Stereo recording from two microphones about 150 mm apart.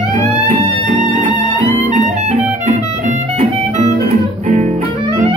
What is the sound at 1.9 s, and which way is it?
Music, 50° right (ahead or behind).